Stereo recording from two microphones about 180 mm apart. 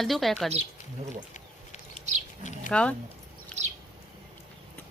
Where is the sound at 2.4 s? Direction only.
45° left (ahead or behind).